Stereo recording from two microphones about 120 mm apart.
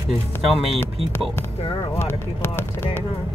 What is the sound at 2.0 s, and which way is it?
Speech, 20° left (ahead or behind).